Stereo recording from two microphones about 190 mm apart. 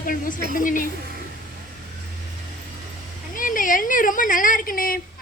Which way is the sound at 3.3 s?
45° left (ahead or behind).